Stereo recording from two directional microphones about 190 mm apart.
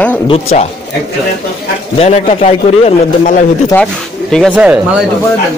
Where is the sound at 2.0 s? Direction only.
35° left (ahead or behind).